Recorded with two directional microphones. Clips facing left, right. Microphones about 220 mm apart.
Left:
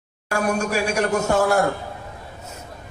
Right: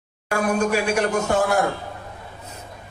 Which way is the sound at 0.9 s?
40° left (ahead or behind).